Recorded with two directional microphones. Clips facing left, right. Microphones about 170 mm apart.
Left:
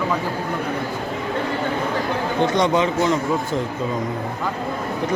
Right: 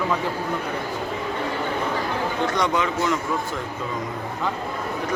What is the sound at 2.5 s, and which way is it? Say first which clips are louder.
Speech: left 5 dB; 25° left (ahead or behind).